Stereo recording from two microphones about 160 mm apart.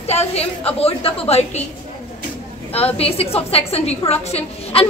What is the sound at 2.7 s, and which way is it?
A woman's voice, 40° left (ahead or behind).